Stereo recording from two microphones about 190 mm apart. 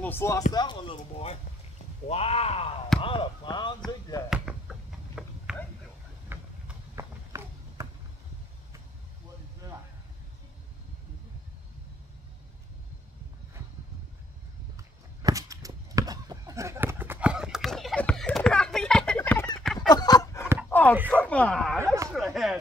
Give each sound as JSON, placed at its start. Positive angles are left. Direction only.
{"t": 0.0, "sound": "speech", "side_deg": 10}
{"t": 0.5, "sound": "speech", "side_deg": 20}
{"t": 4.3, "sound": "basketball bounce", "side_deg": 0}
{"t": 6.3, "sound": "a sound", "side_deg": -10}
{"t": 14.8, "sound": "a sound", "side_deg": -15}
{"t": 19.6, "sound": "fowl", "side_deg": 0}
{"t": 19.9, "sound": "a sound", "side_deg": 20}
{"t": 21.1, "sound": "speech", "side_deg": 5}
{"t": 21.7, "sound": "speech", "side_deg": -15}
{"t": 22.1, "sound": "speech", "side_deg": 0}